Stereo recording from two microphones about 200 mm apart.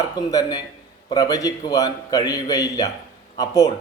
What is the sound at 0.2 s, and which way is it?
A man's voice, 20° left (ahead or behind).